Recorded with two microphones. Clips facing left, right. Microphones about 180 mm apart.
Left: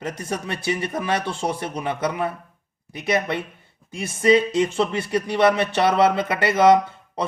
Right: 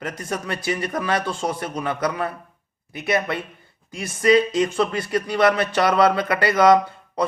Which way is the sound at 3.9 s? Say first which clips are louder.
Even; 25° left (ahead or behind).